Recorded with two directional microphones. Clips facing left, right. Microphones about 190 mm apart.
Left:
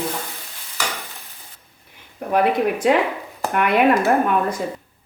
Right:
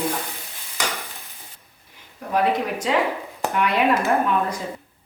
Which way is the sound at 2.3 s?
55° left (ahead or behind).